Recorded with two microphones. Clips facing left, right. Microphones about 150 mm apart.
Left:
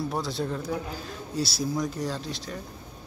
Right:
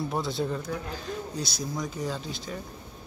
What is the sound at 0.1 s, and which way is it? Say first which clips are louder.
Speech: right 1 dB; centre (ahead or behind).